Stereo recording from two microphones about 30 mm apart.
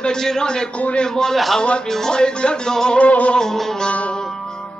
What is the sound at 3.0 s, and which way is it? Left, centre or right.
Music, left.